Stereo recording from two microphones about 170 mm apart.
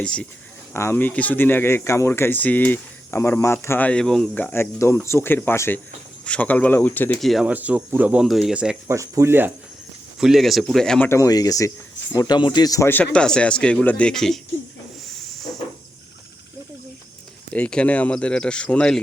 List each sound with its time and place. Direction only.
0.0 s speech: 5° left (ahead or behind)
7.2 s speech: centre (ahead or behind)
8.9 s speech: 15° right (ahead or behind)
10.2 s speech: centre (ahead or behind)
11.1 s speech: 20° left (ahead or behind); by 14.3 s 5° left (ahead or behind)
17.5 s speech: 5° left (ahead or behind)